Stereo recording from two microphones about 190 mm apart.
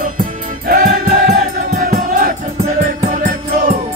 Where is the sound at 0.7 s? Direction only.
50° right (ahead or behind).